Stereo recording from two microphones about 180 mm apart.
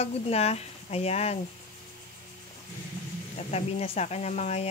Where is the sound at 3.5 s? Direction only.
35° left (ahead or behind).